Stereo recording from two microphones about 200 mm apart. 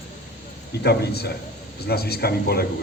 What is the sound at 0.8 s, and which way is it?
Speech, 55° left (ahead or behind).